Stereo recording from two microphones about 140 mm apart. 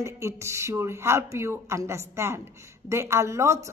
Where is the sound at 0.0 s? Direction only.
20° right (ahead or behind).